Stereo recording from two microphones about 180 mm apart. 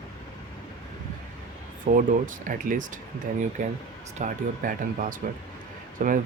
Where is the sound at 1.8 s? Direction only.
50° right (ahead or behind).